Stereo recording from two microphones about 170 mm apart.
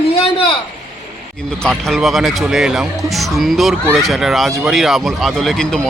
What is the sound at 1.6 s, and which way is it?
Speech, centre (ahead or behind).